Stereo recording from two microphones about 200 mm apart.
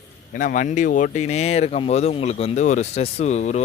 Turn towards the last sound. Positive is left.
turn(degrees=35)  # may be behind; listen again after turning